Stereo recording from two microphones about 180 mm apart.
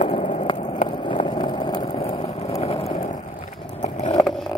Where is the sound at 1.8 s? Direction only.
35° left (ahead or behind).